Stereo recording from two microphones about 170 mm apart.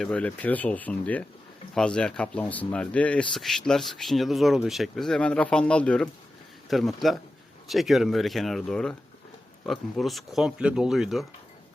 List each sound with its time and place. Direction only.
0.0 s speech: 5° left (ahead or behind)